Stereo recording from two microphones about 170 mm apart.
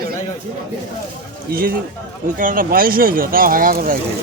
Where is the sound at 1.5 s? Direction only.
60° right (ahead or behind).